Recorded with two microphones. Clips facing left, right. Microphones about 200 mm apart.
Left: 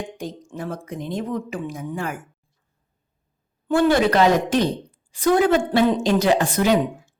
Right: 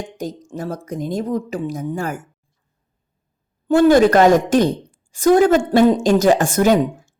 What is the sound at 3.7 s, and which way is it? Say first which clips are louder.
Speech: right 6 dB; 45° right (ahead or behind).